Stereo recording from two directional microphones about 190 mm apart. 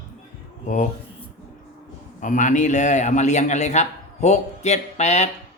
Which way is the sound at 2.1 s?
40° left (ahead or behind).